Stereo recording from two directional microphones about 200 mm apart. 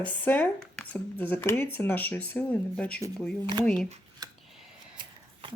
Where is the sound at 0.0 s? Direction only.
10° left (ahead or behind).